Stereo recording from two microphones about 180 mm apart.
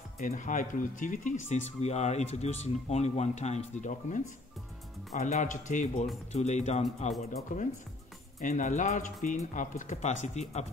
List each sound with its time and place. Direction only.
0.2 s speech: 45° left (ahead or behind)